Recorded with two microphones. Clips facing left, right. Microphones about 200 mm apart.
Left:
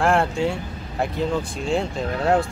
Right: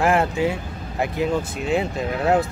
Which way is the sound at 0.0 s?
5° right (ahead or behind).